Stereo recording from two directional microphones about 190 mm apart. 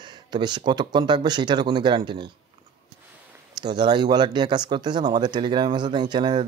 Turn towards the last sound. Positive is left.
turn(degrees=-25)  # may be behind; listen again after turning